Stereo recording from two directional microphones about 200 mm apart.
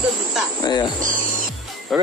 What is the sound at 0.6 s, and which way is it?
Speech, 20° left (ahead or behind).